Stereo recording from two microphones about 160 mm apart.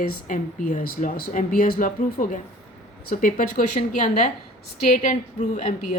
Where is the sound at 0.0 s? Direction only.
60° left (ahead or behind).